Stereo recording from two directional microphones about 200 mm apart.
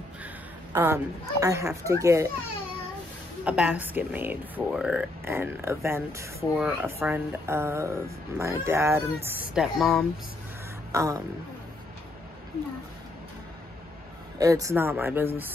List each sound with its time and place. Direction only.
0.7 s speech: 15° right (ahead or behind)
3.4 s speech: 5° right (ahead or behind)
10.9 s a sound: 15° right (ahead or behind)
14.4 s speech: 15° right (ahead or behind)